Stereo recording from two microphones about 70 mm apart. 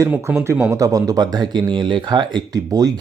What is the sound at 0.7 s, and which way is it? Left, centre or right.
Speech, right.